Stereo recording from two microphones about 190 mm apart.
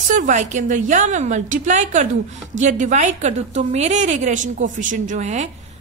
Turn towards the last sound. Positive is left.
turn(degrees=-40)  # may be behind; listen again after turning